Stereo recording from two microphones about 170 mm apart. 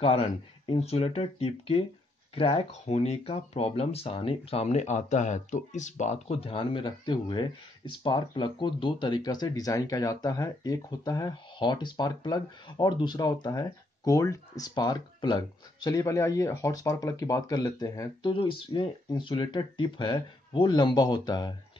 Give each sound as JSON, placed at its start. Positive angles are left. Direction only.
{"t": 0.0, "sound": "speech", "side_deg": 35}